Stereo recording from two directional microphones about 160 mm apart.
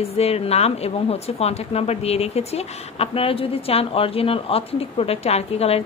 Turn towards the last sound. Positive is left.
turn(degrees=40)  # may be behind; listen again after turning